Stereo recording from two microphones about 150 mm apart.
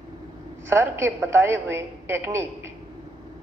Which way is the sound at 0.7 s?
15° right (ahead or behind).